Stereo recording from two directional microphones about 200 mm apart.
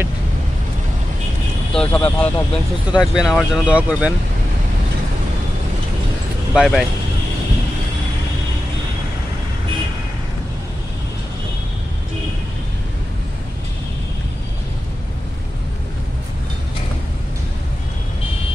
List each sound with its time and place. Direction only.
1.7 s speech: 5° left (ahead or behind)
6.5 s speech: centre (ahead or behind)